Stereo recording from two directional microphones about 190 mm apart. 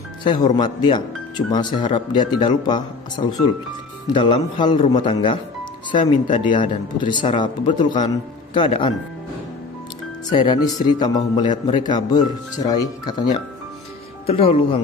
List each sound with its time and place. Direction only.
0.2 s speech: 25° left (ahead or behind)
10.3 s speech: 25° left (ahead or behind)